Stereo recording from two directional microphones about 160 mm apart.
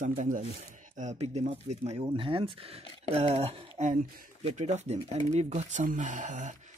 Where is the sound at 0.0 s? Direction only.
55° right (ahead or behind).